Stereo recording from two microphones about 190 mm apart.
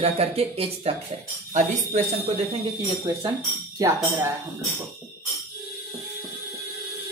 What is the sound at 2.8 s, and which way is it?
Speech, 25° right (ahead or behind).